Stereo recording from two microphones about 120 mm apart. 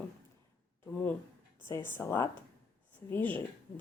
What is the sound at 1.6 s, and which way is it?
A woman's voice, 20° left (ahead or behind).